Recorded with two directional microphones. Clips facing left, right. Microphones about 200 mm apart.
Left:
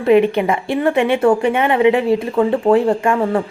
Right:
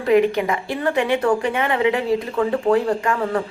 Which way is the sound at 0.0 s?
25° left (ahead or behind).